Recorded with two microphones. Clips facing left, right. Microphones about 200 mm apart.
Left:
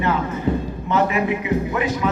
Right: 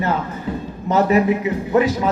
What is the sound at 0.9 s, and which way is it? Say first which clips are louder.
Speech: right 4 dB; 35° right (ahead or behind).